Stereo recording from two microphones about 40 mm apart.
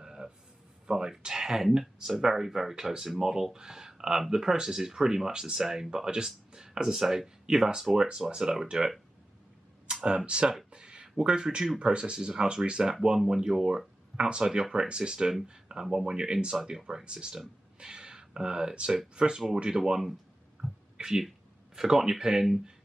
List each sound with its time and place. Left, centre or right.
0.0 s a sound: centre
0.8 s speech: centre
10.0 s speech: right
10.7 s a sound: right
11.8 s speech: right
19.7 s speech: centre
21.0 s speech: centre